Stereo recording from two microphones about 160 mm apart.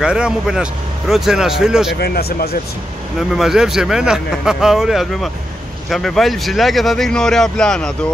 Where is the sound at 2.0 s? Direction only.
80° left.